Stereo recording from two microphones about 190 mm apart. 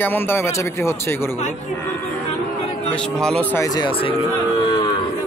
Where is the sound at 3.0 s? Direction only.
5° left (ahead or behind).